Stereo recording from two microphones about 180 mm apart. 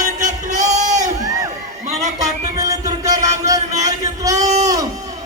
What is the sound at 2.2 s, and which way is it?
Music, 20° right (ahead or behind).